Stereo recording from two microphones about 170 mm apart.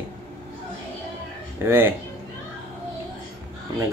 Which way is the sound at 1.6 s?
15° right (ahead or behind).